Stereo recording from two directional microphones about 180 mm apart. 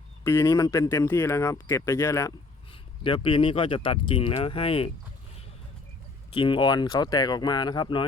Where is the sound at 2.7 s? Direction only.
30° left (ahead or behind).